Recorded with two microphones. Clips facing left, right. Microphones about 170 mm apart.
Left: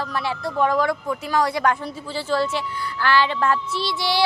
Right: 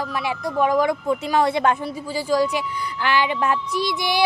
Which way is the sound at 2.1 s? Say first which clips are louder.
Right 2 dB; 10° right (ahead or behind).